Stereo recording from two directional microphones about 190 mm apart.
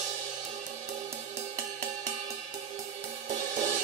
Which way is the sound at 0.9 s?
35° right (ahead or behind).